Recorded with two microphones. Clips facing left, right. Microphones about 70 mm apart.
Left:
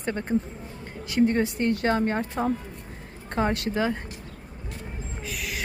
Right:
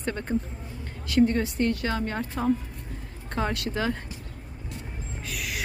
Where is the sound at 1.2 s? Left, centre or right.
Left.